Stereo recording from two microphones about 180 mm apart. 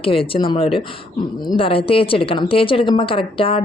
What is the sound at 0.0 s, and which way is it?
A woman's voice, 30° left (ahead or behind).